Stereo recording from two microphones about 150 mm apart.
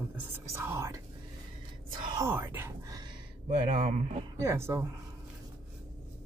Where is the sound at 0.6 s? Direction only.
15° right (ahead or behind).